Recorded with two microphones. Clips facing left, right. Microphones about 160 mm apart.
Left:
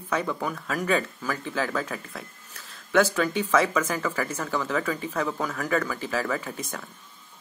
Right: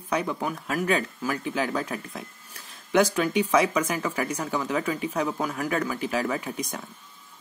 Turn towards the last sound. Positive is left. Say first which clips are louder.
# right 1 dB
turn(degrees=-15)  # may be behind; listen again after turning